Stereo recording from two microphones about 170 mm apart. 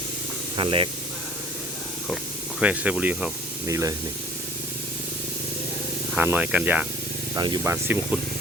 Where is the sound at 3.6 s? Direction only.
20° right (ahead or behind).